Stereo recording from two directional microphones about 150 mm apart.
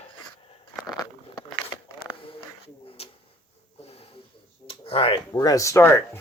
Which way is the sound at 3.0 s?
40° left (ahead or behind).